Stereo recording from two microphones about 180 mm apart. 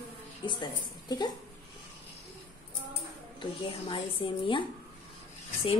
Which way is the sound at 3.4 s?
30° left (ahead or behind).